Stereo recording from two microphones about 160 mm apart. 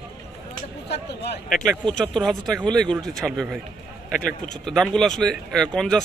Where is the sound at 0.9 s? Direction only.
90° left.